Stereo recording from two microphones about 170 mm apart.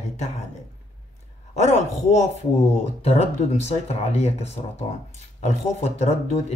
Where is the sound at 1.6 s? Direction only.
40° left (ahead or behind).